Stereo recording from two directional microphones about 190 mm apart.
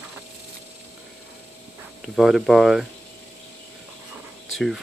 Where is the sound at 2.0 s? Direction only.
Centre (ahead or behind).